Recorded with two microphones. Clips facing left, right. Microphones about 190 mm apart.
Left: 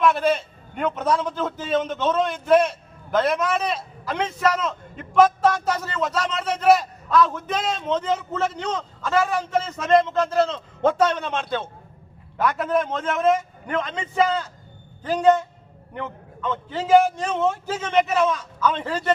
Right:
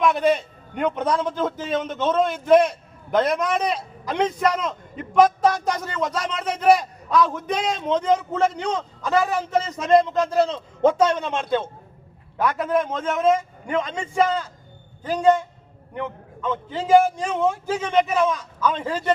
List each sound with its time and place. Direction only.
0.0 s a man's voice: 15° right (ahead or behind)
9.2 s a man's voice: centre (ahead or behind)
9.8 s a man's voice: 10° right (ahead or behind)
12.5 s a man's voice: 10° right (ahead or behind)
15.0 s a man's voice: 10° right (ahead or behind)